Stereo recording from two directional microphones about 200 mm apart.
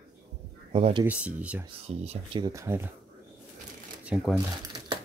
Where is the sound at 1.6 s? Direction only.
30° right (ahead or behind); by 2.8 s 15° right (ahead or behind).